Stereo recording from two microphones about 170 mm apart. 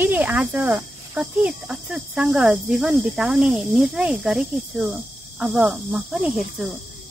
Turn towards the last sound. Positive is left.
turn(degrees=-5)  # may be behind; listen again after turning